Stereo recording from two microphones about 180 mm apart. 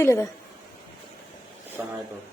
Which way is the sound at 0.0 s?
15° left (ahead or behind).